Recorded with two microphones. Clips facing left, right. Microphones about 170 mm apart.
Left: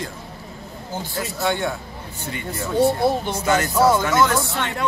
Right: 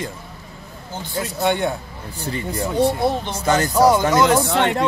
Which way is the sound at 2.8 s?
5° left (ahead or behind).